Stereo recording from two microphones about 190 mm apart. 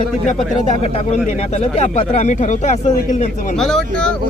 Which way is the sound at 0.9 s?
35° left (ahead or behind).